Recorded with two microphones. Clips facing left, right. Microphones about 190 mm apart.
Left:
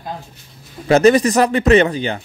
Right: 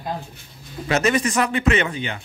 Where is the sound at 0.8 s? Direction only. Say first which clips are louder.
Left 9 dB; 35° left (ahead or behind).